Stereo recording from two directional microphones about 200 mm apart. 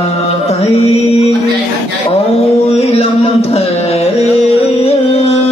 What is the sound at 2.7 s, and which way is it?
Music, 30° left (ahead or behind).